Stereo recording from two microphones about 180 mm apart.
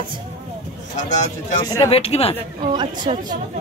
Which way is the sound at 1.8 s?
30° left (ahead or behind).